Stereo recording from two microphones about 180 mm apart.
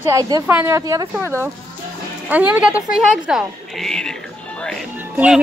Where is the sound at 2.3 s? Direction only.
10° right (ahead or behind).